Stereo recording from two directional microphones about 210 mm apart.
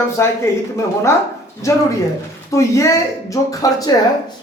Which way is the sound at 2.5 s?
15° left (ahead or behind).